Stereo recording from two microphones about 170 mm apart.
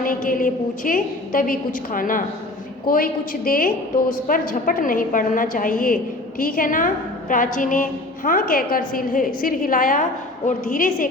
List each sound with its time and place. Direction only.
0.0 s a woman's voice: 55° left (ahead or behind)